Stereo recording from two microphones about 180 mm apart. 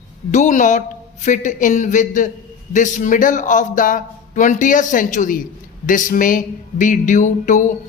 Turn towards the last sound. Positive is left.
turn(degrees=45)  # may be behind; listen again after turning